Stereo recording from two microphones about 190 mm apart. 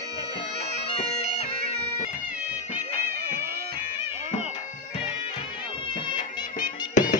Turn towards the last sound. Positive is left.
turn(degrees=40)  # may be behind; listen again after turning